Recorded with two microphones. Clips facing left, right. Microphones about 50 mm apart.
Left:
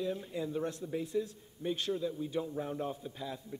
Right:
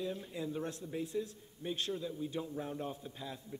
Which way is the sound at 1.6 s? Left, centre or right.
Centre.